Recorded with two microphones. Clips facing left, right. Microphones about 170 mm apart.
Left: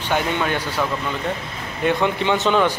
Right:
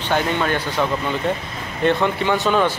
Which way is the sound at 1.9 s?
15° left (ahead or behind).